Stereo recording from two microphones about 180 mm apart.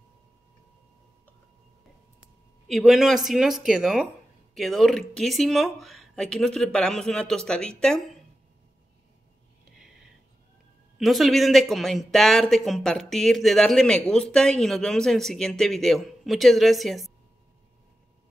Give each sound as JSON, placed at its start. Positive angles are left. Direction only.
{"t": 2.7, "sound": "speech", "side_deg": 0}
{"t": 11.0, "sound": "speech", "side_deg": 0}